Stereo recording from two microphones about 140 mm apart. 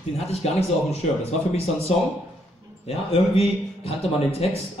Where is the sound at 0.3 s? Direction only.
50° left (ahead or behind).